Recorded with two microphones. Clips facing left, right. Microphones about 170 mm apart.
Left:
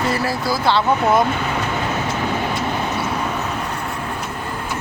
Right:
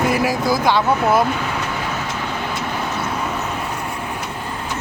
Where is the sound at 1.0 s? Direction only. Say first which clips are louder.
Even; 5° right (ahead or behind).